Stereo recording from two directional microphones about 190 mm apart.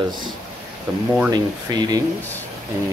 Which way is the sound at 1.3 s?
20° right (ahead or behind).